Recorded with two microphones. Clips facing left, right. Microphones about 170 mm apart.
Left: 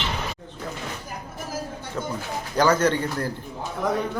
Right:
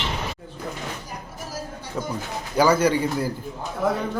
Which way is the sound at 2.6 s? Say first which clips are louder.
Right 2 dB; 10° right (ahead or behind).